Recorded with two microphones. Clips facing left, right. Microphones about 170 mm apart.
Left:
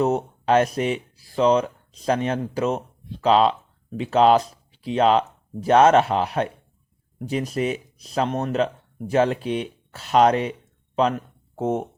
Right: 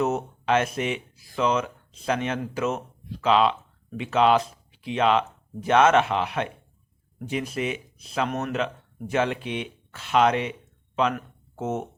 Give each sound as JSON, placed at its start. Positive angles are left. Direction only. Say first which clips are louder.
{"t": 0.0, "sound": "speech", "louder": "left 4 dB", "side_deg": 30}